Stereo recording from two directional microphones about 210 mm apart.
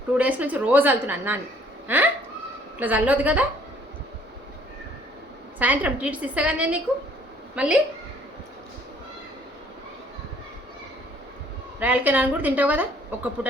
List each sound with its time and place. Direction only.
0.1 s a woman's voice: 5° right (ahead or behind)
5.5 s a woman's voice: 5° right (ahead or behind)
11.8 s a woman's voice: 10° right (ahead or behind)